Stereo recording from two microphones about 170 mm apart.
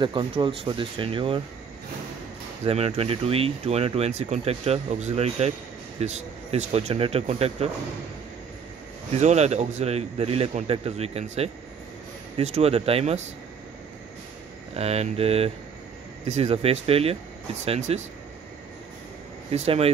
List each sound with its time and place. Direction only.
0.0 s speech: 30° right (ahead or behind)
2.6 s speech: 35° right (ahead or behind)
9.1 s speech: 40° right (ahead or behind)
14.7 s speech: 40° right (ahead or behind)
19.5 s speech: 35° right (ahead or behind)